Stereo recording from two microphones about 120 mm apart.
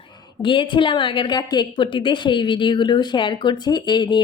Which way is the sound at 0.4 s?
45° left (ahead or behind).